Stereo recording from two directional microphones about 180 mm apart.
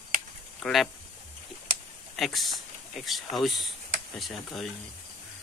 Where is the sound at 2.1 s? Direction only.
Centre (ahead or behind).